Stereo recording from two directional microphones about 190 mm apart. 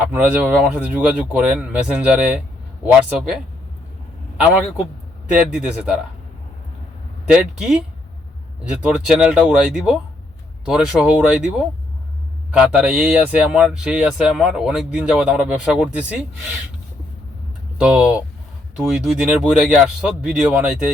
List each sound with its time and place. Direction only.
0.1 s speech: 5° right (ahead or behind)
5.3 s speech: 5° right (ahead or behind)
7.3 s speech: 5° right (ahead or behind)
17.7 s speech: 5° right (ahead or behind)